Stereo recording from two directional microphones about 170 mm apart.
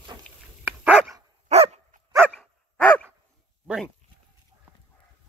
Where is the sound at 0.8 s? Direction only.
5° right (ahead or behind).